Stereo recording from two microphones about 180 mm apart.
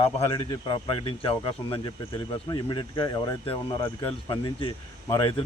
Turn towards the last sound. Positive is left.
turn(degrees=25)  # may be behind; listen again after turning